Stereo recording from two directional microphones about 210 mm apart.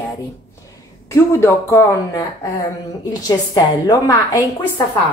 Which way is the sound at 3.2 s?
20° left (ahead or behind).